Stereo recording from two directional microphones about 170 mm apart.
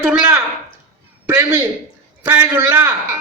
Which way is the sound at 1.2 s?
15° right (ahead or behind).